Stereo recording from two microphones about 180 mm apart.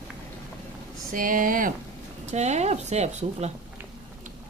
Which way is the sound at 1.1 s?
50° right (ahead or behind).